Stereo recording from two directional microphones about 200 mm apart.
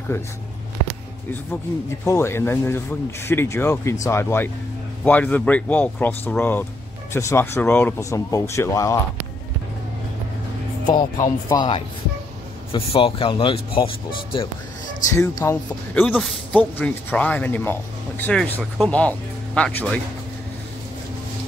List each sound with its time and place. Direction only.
2.0 s a man's voice: 15° left (ahead or behind)
11.1 s speech: 15° left (ahead or behind)
15.1 s a man's voice: 15° left (ahead or behind)
15.9 s a man's voice: 5° left (ahead or behind)